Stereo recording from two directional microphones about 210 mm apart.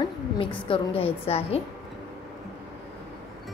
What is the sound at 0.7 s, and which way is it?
Speech, 25° left (ahead or behind).